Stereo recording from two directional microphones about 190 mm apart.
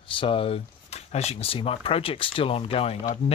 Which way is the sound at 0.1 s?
25° left (ahead or behind).